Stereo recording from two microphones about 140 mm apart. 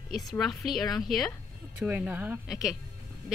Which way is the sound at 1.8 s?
10° right (ahead or behind).